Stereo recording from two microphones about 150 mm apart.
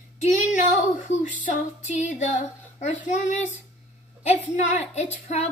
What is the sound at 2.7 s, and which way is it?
Speech, 55° left (ahead or behind).